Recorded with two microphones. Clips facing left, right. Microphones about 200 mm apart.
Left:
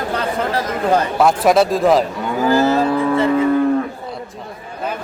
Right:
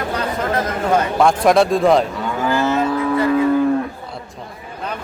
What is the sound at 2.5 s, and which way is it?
Cattle, 35° left (ahead or behind).